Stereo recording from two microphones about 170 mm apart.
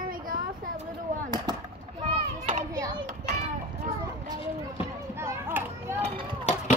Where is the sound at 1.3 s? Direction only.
25° right (ahead or behind).